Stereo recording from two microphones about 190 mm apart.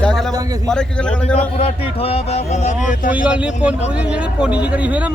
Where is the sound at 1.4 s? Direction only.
30° left (ahead or behind).